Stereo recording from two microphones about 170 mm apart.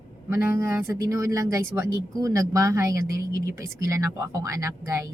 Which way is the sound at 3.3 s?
60° left (ahead or behind).